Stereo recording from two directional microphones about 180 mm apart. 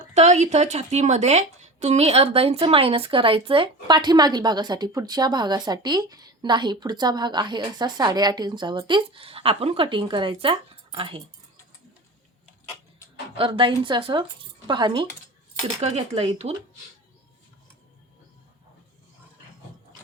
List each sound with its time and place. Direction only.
0.0 s a woman's voice: 40° right (ahead or behind)
13.3 s a woman's voice: 30° right (ahead or behind)
15.8 s speech: 35° right (ahead or behind)